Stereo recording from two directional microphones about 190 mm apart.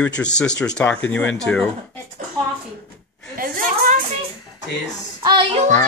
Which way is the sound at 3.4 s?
45° right (ahead or behind).